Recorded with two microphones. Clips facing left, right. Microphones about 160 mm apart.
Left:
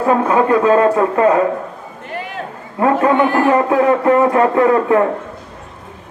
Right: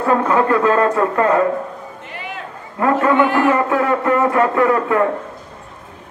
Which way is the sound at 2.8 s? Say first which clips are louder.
Left 2 dB; 25° left (ahead or behind).